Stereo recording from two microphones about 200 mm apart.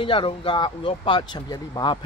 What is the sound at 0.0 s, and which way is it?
Speech, 25° left (ahead or behind).